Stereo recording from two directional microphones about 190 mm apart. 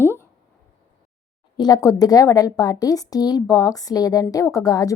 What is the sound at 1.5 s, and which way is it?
A woman's voice, 20° left (ahead or behind).